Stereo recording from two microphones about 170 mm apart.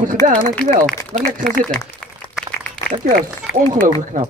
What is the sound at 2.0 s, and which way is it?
Applause, 5° left (ahead or behind).